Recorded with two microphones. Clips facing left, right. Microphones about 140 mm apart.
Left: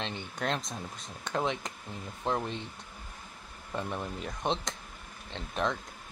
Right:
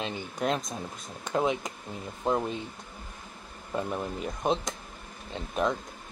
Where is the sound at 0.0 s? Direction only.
5° right (ahead or behind).